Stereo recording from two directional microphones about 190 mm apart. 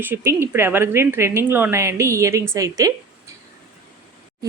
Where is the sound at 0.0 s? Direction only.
10° right (ahead or behind).